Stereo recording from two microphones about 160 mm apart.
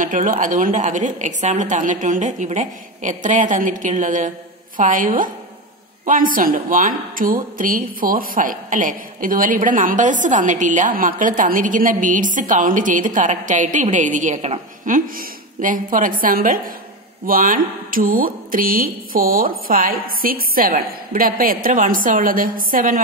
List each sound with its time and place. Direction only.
0.0 s a woman's voice: 55° right (ahead or behind)